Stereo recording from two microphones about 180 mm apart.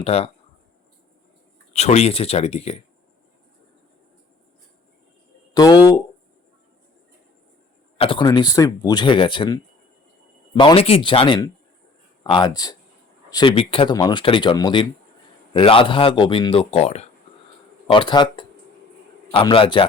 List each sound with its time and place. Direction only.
0.0 s speech: 35° left (ahead or behind)
1.7 s speech: 35° left (ahead or behind)
5.5 s speech: 20° left (ahead or behind)
7.9 s speech: 30° left (ahead or behind)
17.9 s speech: 25° left (ahead or behind)